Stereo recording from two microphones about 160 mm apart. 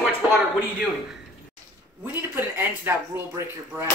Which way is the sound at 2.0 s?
15° right (ahead or behind).